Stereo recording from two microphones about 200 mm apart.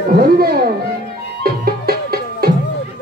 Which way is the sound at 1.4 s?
50° right (ahead or behind).